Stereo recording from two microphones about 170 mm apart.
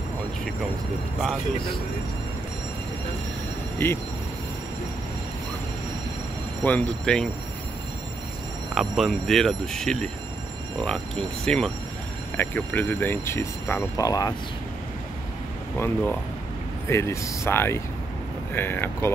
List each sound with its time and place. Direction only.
3.7 s speech: 10° left (ahead or behind)
6.6 s speech: 10° left (ahead or behind)
8.7 s speech: centre (ahead or behind); by 14.3 s 20° left (ahead or behind)
15.8 s speech: 10° left (ahead or behind)